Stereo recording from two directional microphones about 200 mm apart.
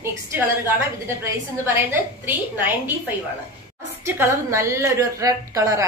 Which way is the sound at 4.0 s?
15° right (ahead or behind).